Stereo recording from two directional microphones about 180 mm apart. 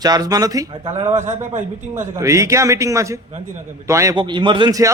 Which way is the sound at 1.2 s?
40° right (ahead or behind).